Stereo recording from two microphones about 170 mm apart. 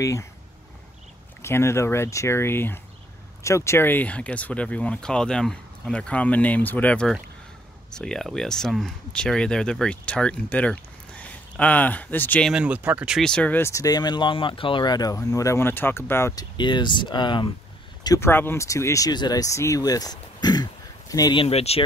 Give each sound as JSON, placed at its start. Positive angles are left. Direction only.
{"t": 0.0, "sound": "speech", "side_deg": 20}
{"t": 1.4, "sound": "speech", "side_deg": 15}
{"t": 12.5, "sound": "speech", "side_deg": -10}
{"t": 16.5, "sound": "speech", "side_deg": 25}